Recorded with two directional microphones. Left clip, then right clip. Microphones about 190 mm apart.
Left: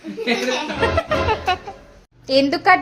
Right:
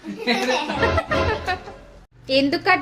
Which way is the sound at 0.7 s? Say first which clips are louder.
Left 1 dB; centre (ahead or behind).